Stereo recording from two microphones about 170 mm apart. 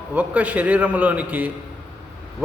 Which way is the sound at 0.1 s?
10° right (ahead or behind).